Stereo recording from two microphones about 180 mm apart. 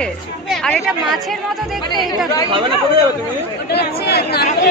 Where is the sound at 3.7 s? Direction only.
65° left (ahead or behind).